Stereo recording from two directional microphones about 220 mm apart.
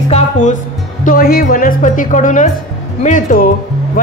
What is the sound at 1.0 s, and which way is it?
Speech, 40° left (ahead or behind).